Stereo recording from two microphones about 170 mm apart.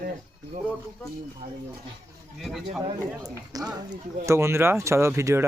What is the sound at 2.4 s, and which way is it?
Speech, centre (ahead or behind).